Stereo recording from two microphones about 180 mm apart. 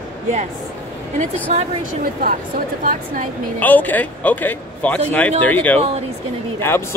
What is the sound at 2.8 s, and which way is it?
Speech, 50° right (ahead or behind).